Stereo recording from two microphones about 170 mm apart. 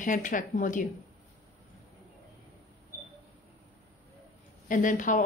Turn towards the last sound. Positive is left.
turn(degrees=50)  # may be behind; listen again after turning